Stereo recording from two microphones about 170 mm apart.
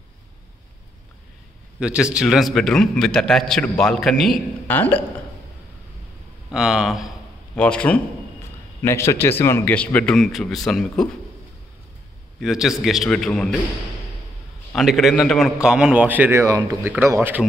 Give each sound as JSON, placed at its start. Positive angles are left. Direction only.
{"t": 1.8, "sound": "a man's voice", "side_deg": -5}
{"t": 6.5, "sound": "a man's voice", "side_deg": -5}
{"t": 12.4, "sound": "a man's voice", "side_deg": 0}
{"t": 14.7, "sound": "a man's voice", "side_deg": 0}